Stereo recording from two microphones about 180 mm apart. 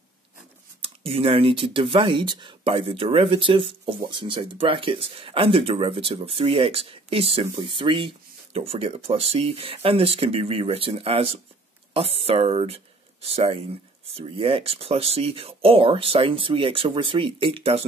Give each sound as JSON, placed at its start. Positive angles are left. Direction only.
{"t": 0.8, "sound": "speech", "side_deg": -30}